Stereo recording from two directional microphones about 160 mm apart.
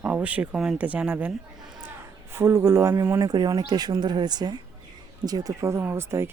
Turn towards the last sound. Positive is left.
turn(degrees=-15)  # may be behind; listen again after turning